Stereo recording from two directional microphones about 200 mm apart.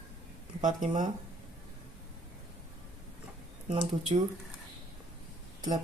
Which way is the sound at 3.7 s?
30° right (ahead or behind).